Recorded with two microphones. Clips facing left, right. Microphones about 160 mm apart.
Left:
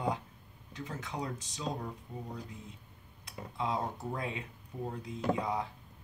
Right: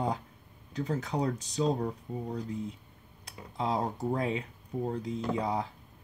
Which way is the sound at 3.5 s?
35° right (ahead or behind).